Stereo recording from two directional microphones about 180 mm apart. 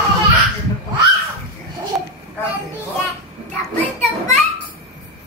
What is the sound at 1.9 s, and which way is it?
Speech, 5° right (ahead or behind).